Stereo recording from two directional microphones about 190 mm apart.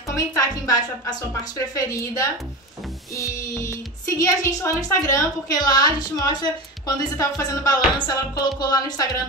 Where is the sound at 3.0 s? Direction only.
15° left (ahead or behind).